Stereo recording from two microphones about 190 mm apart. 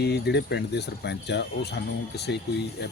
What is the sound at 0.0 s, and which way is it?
Speech, 60° left (ahead or behind).